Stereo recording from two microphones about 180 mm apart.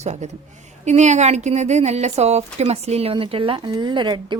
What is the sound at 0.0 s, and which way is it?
Speech, 40° right (ahead or behind).